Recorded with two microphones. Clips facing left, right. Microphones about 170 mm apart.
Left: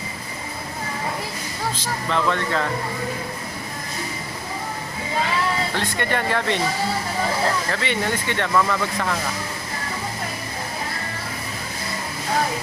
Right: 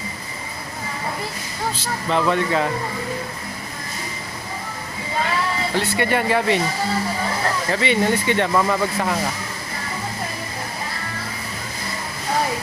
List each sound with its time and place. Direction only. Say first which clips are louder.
1.8 s speech: right 2 dB; 15° right (ahead or behind)
5.7 s speech: right 4 dB; 15° right (ahead or behind)
7.7 s speech: right 5 dB; 15° right (ahead or behind)